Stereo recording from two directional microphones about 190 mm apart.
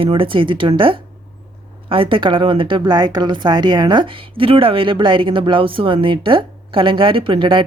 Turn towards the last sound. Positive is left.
turn(degrees=-25)  # may be behind; listen again after turning